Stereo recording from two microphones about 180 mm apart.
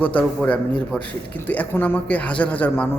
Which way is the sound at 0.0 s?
10° left (ahead or behind).